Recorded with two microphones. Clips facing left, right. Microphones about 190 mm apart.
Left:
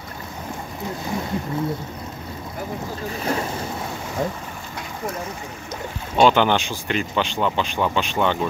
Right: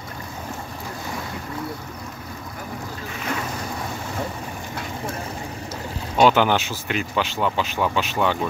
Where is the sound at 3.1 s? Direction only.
35° left (ahead or behind).